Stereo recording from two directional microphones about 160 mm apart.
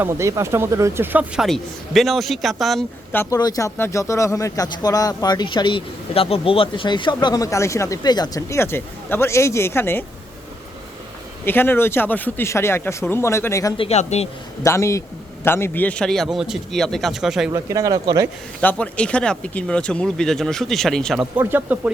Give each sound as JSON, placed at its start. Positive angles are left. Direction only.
{"t": 0.0, "sound": "speech", "side_deg": -15}
{"t": 1.5, "sound": "speech", "side_deg": 0}
{"t": 3.1, "sound": "speech", "side_deg": 15}
{"t": 11.4, "sound": "speech", "side_deg": 15}
{"t": 13.7, "sound": "speech", "side_deg": 40}
{"t": 14.6, "sound": "speech", "side_deg": 20}
{"t": 17.5, "sound": "speech", "side_deg": -20}
{"t": 18.6, "sound": "speech", "side_deg": 10}
{"t": 21.3, "sound": "speech", "side_deg": -10}